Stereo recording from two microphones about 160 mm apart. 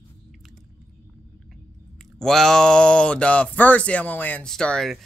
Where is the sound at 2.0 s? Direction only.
Centre (ahead or behind).